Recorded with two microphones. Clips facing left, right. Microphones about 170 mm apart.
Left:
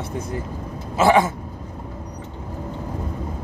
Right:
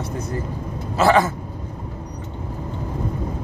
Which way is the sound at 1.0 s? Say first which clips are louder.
Even; 20° left (ahead or behind).